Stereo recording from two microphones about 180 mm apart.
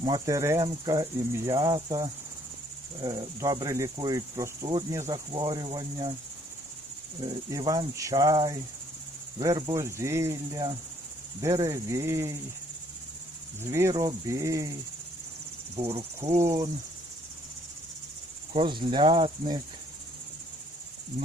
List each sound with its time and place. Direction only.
0.0 s cricket: 20° right (ahead or behind)
7.3 s cricket: 20° right (ahead or behind)
13.6 s cricket: 15° right (ahead or behind)
15.7 s insect: 35° right (ahead or behind)
16.4 s cricket: 20° right (ahead or behind)
18.5 s cricket: 25° right (ahead or behind)